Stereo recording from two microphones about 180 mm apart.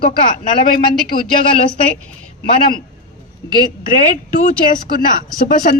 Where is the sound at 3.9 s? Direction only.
50° left (ahead or behind).